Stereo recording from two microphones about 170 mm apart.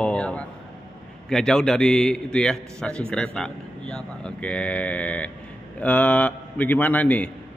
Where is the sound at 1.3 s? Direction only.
5° left (ahead or behind).